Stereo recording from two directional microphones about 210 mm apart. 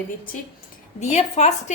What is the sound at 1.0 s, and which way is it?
Speech, 30° left (ahead or behind).